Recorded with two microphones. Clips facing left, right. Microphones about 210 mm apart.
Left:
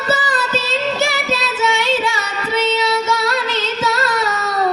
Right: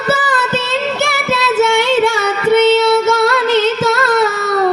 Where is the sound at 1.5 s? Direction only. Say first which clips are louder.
Right 8 dB; 55° right (ahead or behind).